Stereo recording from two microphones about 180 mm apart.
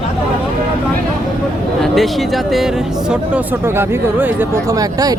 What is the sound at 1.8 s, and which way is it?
A man's voice, centre (ahead or behind).